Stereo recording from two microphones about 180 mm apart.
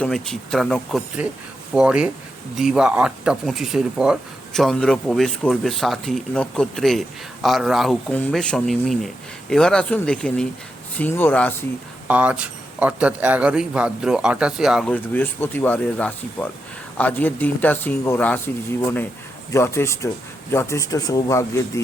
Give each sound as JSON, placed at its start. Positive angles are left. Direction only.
{"t": 0.0, "sound": "speech", "side_deg": 5}
{"t": 12.0, "sound": "a man's voice", "side_deg": -10}
{"t": 14.9, "sound": "speech", "side_deg": 10}